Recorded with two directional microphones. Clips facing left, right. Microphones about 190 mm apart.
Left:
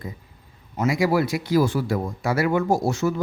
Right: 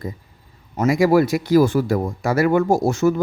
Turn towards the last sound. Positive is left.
turn(degrees=-50)  # may be behind; listen again after turning